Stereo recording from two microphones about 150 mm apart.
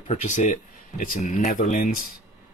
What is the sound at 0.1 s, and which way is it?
Speech, 55° left (ahead or behind).